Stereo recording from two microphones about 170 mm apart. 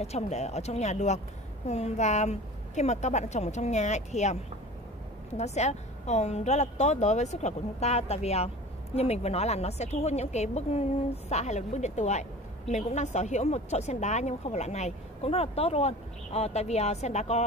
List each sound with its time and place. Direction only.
0.0 s a woman's voice: 40° left (ahead or behind)